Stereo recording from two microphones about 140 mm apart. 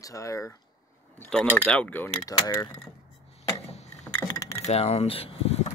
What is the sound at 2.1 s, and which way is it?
Speech, 30° left (ahead or behind).